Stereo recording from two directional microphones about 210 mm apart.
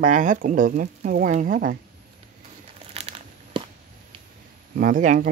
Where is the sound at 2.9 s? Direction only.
30° right (ahead or behind).